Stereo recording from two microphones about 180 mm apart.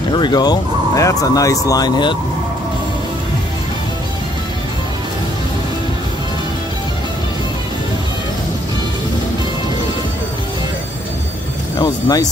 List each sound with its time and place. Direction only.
0.1 s speech: 25° left (ahead or behind)
11.8 s speech: 20° left (ahead or behind)